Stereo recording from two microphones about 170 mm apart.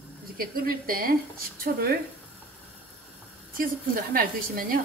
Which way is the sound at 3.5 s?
55° right (ahead or behind).